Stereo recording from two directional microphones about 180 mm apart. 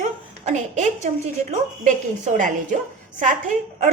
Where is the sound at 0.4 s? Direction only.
40° right (ahead or behind).